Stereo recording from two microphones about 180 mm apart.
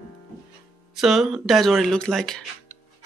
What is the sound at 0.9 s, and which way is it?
Speech, centre (ahead or behind).